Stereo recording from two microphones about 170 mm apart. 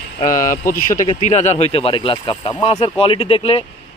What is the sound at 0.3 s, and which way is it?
Speech, 50° left (ahead or behind).